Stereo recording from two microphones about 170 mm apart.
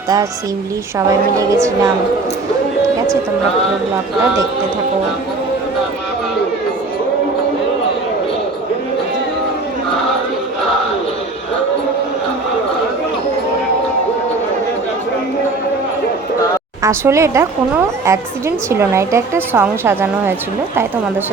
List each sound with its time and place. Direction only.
1.4 s a woman's voice: 20° right (ahead or behind)
16.8 s a woman's voice: 15° right (ahead or behind)